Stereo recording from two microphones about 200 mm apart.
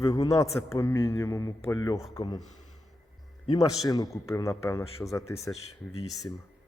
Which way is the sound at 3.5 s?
20° left (ahead or behind).